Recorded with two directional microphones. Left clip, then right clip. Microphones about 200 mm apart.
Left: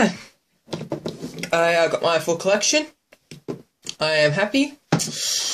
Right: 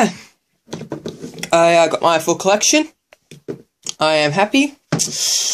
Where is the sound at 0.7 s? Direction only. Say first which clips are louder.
Right 1 dB; 15° right (ahead or behind).